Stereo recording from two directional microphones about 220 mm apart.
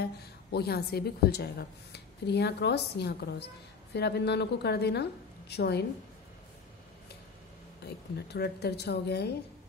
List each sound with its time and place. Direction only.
0.0 s a woman's voice: 45° left (ahead or behind)
7.8 s a woman's voice: 50° left (ahead or behind)